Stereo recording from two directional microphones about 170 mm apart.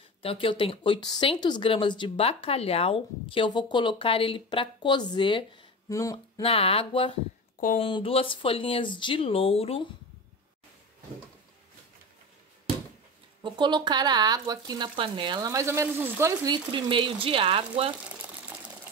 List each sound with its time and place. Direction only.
0.2 s speech: 35° left (ahead or behind)
5.9 s a sound: 20° left (ahead or behind)
6.4 s speech: 35° left (ahead or behind)
13.4 s speech: 25° right (ahead or behind)
16.7 s speech: 30° right (ahead or behind)